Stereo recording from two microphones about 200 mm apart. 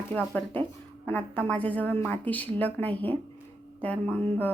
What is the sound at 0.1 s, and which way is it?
A woman's voice, 5° left (ahead or behind).